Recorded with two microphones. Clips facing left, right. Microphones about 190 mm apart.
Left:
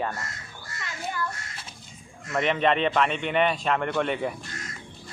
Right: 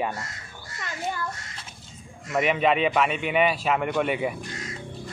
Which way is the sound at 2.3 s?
5° right (ahead or behind).